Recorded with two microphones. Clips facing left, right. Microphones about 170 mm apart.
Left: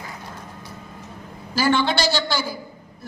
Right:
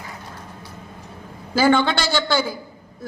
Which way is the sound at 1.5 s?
55° right (ahead or behind).